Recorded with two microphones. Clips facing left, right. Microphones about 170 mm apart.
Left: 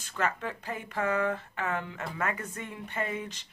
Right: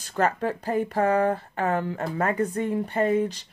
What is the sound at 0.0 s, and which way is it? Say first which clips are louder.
Speech: right 8 dB; 40° right (ahead or behind).